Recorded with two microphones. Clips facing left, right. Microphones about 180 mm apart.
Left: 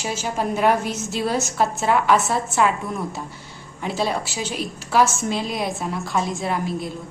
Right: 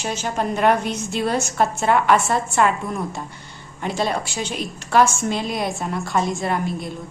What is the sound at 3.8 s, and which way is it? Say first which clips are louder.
A woman's voice: right 1 dB; centre (ahead or behind).